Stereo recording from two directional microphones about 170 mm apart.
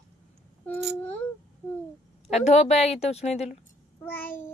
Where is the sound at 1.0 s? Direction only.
10° left (ahead or behind).